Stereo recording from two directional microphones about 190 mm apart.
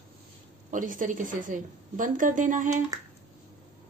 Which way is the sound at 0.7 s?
45° right (ahead or behind).